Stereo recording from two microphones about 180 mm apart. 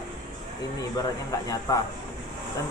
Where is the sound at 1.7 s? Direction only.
20° left (ahead or behind).